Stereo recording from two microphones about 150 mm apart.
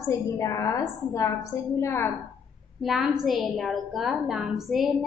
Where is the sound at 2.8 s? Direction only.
Centre (ahead or behind).